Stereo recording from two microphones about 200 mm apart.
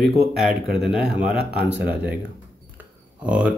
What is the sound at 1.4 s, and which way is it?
Speech, 55° right (ahead or behind).